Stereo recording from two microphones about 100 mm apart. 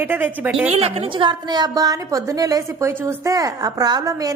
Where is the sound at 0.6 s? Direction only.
90° right.